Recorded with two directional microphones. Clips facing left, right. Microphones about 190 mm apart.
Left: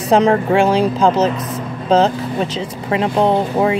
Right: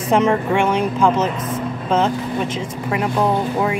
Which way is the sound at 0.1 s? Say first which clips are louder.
Left 4 dB; 35° left (ahead or behind).